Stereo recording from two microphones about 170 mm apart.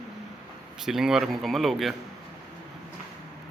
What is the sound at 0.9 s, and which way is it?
Speech, 5° right (ahead or behind).